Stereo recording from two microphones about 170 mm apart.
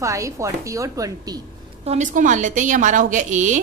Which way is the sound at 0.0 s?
20° right (ahead or behind).